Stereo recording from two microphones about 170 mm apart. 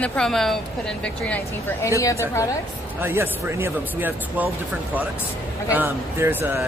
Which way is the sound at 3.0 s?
15° right (ahead or behind).